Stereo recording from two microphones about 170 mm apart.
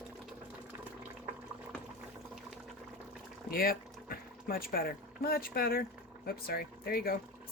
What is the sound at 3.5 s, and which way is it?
Speech, 60° left (ahead or behind).